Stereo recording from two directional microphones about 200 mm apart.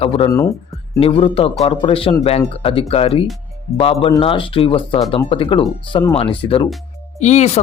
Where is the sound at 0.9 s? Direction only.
30° left (ahead or behind).